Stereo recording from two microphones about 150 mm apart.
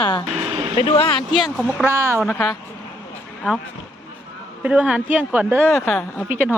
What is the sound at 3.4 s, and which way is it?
Speech, 10° right (ahead or behind).